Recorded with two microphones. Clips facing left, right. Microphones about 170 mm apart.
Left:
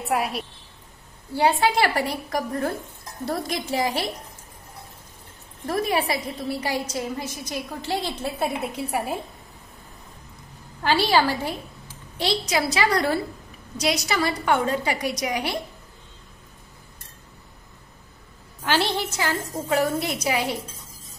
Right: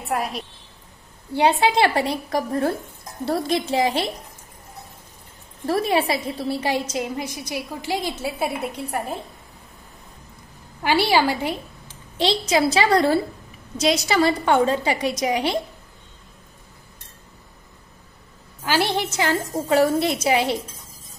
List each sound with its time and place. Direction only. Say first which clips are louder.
0.1 s a woman's voice: even; 5° left (ahead or behind)
1.3 s a woman's voice: right 2 dB; 20° right (ahead or behind)
5.7 s a woman's voice: right 3 dB; 30° right (ahead or behind); by 9.2 s 5° left (ahead or behind)
10.8 s a woman's voice: right 1 dB; 15° right (ahead or behind)
12.2 s a woman's voice: right 4 dB; 25° right (ahead or behind)
18.6 s a woman's voice: right 2 dB; 10° right (ahead or behind); by 20.5 s 25° right (ahead or behind)